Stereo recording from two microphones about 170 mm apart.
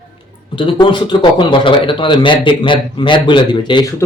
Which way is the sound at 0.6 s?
30° left (ahead or behind).